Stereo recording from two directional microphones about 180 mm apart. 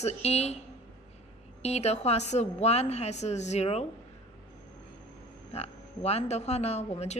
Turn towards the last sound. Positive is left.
turn(degrees=35)  # may be behind; listen again after turning